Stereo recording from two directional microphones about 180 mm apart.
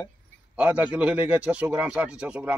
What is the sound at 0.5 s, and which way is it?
A man's voice, 5° right (ahead or behind).